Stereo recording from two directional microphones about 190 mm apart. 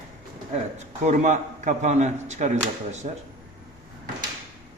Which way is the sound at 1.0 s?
40° right (ahead or behind).